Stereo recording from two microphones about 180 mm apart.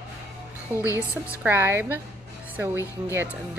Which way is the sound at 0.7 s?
10° right (ahead or behind).